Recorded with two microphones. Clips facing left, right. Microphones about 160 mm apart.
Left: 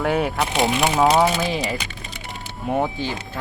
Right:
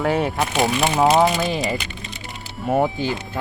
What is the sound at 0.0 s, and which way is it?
Speech, centre (ahead or behind).